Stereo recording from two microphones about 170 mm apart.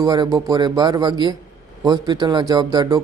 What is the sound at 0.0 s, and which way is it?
Speech, 20° right (ahead or behind).